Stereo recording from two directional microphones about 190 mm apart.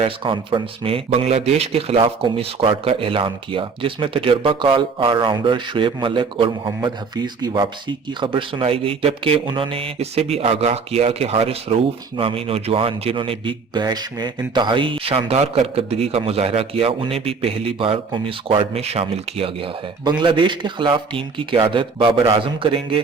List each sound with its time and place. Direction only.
0.0 s speech: 25° right (ahead or behind)